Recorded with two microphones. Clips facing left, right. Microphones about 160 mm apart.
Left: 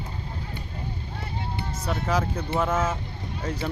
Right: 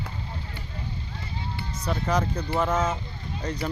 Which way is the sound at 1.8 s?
5° left (ahead or behind).